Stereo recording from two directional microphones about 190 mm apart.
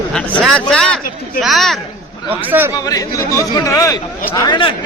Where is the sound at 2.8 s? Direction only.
20° left (ahead or behind).